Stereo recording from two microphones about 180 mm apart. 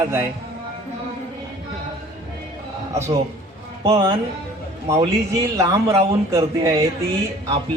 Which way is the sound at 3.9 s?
25° right (ahead or behind).